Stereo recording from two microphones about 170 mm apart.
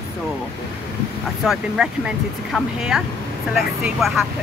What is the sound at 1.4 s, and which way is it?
Speech, centre (ahead or behind).